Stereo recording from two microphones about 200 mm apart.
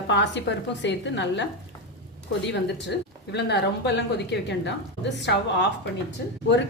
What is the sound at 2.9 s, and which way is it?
Speech, 60° left (ahead or behind).